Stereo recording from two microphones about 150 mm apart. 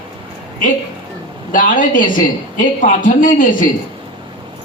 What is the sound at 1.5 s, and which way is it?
A woman's voice, 65° left (ahead or behind).